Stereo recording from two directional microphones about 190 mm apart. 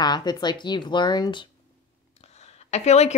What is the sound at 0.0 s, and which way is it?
Speech, 20° left (ahead or behind).